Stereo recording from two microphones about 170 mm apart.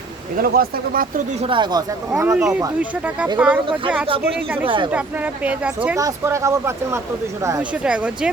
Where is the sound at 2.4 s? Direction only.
5° right (ahead or behind).